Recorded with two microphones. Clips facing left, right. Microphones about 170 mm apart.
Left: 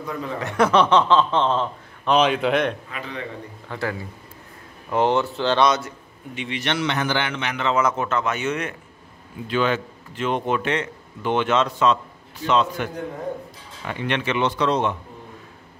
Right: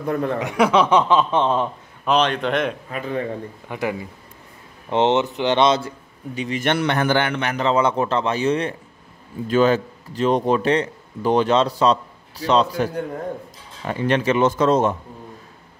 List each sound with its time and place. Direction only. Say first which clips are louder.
0.0 s speech: right 7 dB; 60° right (ahead or behind)
0.4 s speech: left 1 dB; 10° right (ahead or behind)
2.0 s a man's voice: left 1 dB; 5° left (ahead or behind)
2.9 s a man's voice: right 7 dB; 45° right (ahead or behind)
3.6 s a man's voice: right 2 dB; 15° right (ahead or behind); by 7.5 s 50° right (ahead or behind)
7.5 s a man's voice: right 3 dB; 35° right (ahead or behind)